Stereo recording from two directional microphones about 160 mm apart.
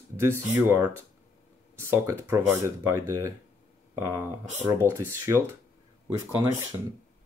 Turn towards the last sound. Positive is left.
turn(degrees=-25)  # may be behind; listen again after turning